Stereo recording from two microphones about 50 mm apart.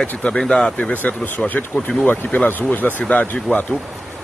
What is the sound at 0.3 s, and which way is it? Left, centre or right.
Speech, centre.